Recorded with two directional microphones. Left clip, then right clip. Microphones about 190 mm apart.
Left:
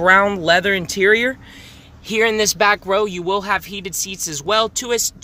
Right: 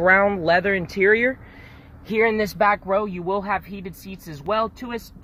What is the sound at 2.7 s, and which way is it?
Speech, 25° left (ahead or behind).